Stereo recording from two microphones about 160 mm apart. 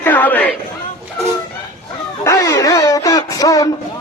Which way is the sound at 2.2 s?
20° left (ahead or behind).